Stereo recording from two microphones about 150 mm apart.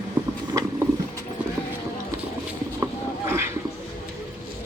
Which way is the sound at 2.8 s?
15° right (ahead or behind).